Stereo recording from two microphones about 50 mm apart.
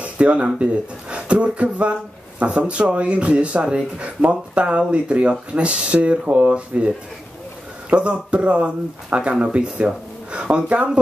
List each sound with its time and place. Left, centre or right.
0.0 s a sound: right
1.1 s speech: right
7.9 s speech: right